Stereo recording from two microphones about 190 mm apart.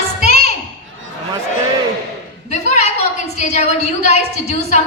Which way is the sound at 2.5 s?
35° left (ahead or behind).